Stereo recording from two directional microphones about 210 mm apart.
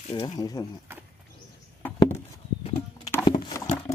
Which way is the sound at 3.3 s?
20° left (ahead or behind).